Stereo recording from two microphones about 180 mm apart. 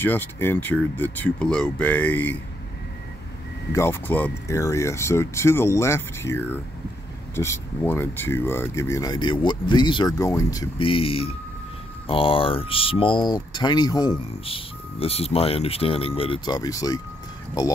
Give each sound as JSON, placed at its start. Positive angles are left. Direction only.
{"t": 0.0, "sound": "speech", "side_deg": 10}
{"t": 3.7, "sound": "speech", "side_deg": 15}